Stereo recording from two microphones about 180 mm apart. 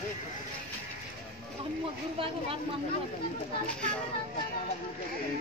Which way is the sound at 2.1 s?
30° right (ahead or behind).